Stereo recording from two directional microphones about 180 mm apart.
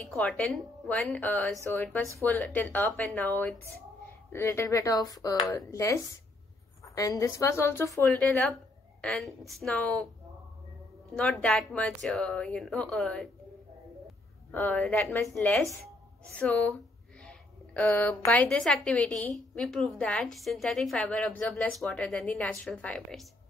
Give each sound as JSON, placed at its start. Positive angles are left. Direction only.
{"t": 0.0, "sound": "a woman's voice", "side_deg": 5}
{"t": 11.1, "sound": "a woman's voice", "side_deg": 5}
{"t": 14.5, "sound": "a woman's voice", "side_deg": 10}